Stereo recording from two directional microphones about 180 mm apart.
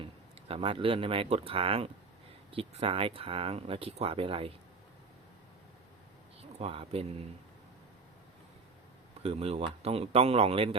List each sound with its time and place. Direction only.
0.0 s speech: 30° right (ahead or behind)
6.6 s speech: 30° right (ahead or behind)
9.2 s speech: 35° right (ahead or behind)